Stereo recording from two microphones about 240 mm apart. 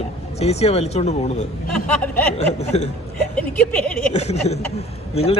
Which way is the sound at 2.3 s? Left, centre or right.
Left.